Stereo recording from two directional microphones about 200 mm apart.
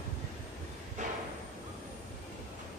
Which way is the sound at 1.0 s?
35° right (ahead or behind).